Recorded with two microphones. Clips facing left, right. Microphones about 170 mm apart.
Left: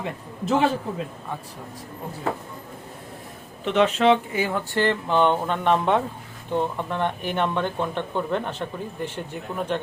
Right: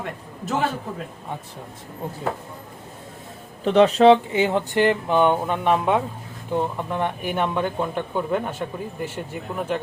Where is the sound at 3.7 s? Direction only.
35° right (ahead or behind).